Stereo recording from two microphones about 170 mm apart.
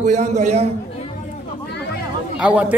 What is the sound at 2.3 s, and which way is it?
Speech, 10° right (ahead or behind).